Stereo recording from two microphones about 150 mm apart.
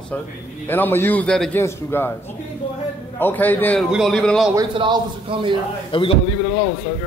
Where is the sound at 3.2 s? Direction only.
10° left (ahead or behind).